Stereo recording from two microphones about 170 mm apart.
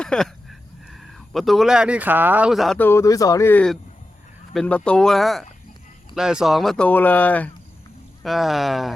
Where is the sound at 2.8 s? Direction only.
15° left (ahead or behind); by 8.9 s centre (ahead or behind).